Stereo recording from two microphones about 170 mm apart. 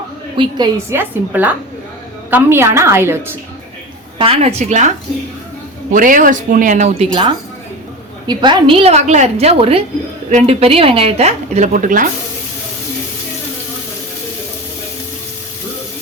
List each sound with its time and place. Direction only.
0.3 s a woman's voice: 25° right (ahead or behind)
0.9 s a woman's voice: 10° right (ahead or behind)
4.2 s a woman's voice: 35° right (ahead or behind)
5.9 s speech: 50° right (ahead or behind)
7.1 s a woman's voice: 30° right (ahead or behind); by 12.0 s 50° right (ahead or behind)